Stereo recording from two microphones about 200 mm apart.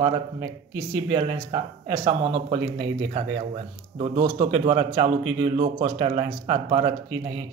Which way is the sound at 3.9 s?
25° right (ahead or behind).